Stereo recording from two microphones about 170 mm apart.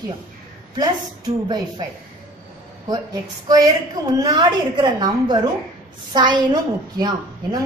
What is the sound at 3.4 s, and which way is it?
A woman's voice, 20° right (ahead or behind).